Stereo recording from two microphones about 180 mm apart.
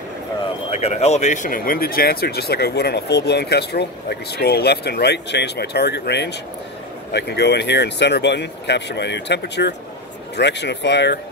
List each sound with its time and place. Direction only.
0.7 s speech: 35° left (ahead or behind); by 11.1 s 75° left (ahead or behind)